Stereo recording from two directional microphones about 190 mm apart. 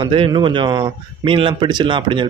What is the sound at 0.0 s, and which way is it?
Speech, 25° right (ahead or behind).